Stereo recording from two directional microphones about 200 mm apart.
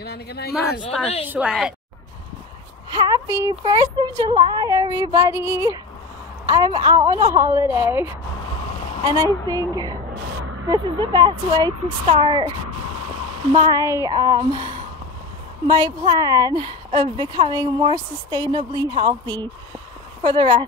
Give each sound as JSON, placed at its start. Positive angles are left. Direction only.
{"t": 0.0, "sound": "speech", "side_deg": 55}
{"t": 1.2, "sound": "speech", "side_deg": -5}
{"t": 2.9, "sound": "a woman's voice", "side_deg": -20}
{"t": 8.4, "sound": "a sound", "side_deg": 25}
{"t": 8.7, "sound": "a sound", "side_deg": 35}
{"t": 9.0, "sound": "a woman's voice", "side_deg": -20}
{"t": 9.3, "sound": "speech", "side_deg": 10}
{"t": 10.7, "sound": "a woman's voice", "side_deg": -20}
{"t": 15.6, "sound": "a woman's voice", "side_deg": -20}